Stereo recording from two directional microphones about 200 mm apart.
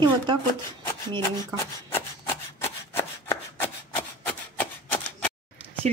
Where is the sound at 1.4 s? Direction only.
10° left (ahead or behind).